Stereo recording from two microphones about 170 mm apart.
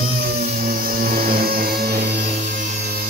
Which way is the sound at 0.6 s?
55° right (ahead or behind).